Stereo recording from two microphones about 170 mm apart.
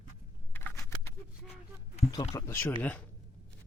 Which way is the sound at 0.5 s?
15° left (ahead or behind).